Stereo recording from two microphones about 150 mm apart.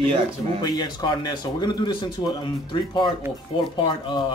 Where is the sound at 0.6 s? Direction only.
25° left (ahead or behind).